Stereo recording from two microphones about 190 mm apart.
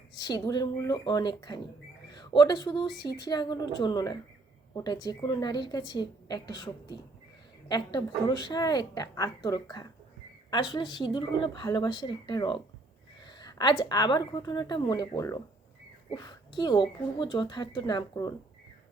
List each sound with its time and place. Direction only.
0.2 s a woman's voice: 20° left (ahead or behind)